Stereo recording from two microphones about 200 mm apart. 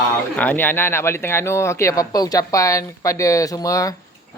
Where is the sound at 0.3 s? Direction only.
10° left (ahead or behind).